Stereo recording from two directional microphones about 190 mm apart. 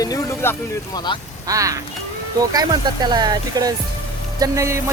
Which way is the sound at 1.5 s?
15° right (ahead or behind).